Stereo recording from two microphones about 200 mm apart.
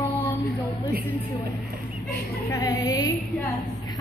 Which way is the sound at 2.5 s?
20° left (ahead or behind).